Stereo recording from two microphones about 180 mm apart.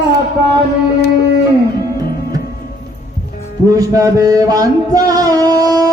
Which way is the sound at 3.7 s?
20° right (ahead or behind).